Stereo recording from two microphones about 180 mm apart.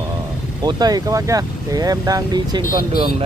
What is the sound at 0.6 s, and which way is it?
Speech, 20° right (ahead or behind).